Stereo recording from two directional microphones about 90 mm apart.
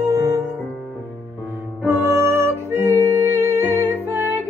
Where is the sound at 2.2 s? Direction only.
30° right (ahead or behind).